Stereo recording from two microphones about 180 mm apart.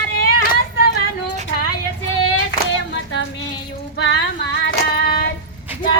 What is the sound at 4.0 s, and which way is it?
Female singing, 85° left.